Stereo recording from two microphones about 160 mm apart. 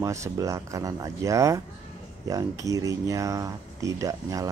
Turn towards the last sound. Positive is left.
turn(degrees=-20)  # may be behind; listen again after turning